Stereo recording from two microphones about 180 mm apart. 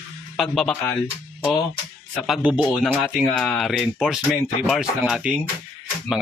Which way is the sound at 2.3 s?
5° right (ahead or behind).